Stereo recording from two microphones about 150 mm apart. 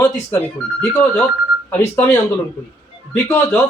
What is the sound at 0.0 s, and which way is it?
A man's voice, 10° left (ahead or behind).